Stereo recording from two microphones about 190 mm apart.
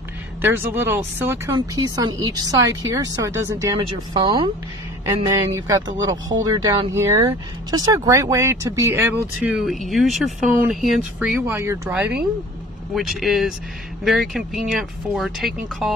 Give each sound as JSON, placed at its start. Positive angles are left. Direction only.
{"t": 0.4, "sound": "speech", "side_deg": -10}
{"t": 3.7, "sound": "speech", "side_deg": -25}